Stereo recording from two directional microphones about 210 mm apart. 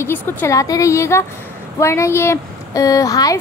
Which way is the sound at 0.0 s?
10° left (ahead or behind).